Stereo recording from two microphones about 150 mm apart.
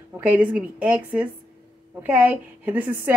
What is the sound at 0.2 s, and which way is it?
Speech, 10° right (ahead or behind).